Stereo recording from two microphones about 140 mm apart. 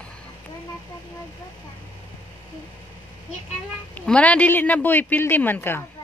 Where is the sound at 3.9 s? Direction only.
10° left (ahead or behind).